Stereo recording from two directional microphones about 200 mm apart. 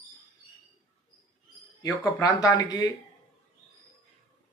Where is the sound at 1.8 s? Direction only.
15° left (ahead or behind).